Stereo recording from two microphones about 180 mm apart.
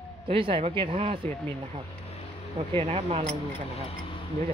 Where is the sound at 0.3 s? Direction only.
30° right (ahead or behind).